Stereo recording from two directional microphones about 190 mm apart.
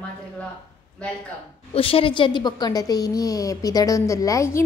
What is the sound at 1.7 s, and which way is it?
A woman's voice, 30° left (ahead or behind).